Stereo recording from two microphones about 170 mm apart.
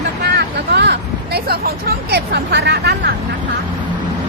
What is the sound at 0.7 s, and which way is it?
Speech, 80° right.